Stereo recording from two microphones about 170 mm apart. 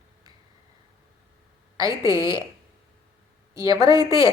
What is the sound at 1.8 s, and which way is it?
Speech, 20° right (ahead or behind).